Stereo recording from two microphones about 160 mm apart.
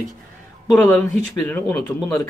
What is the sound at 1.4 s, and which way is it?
Speech, 10° left (ahead or behind).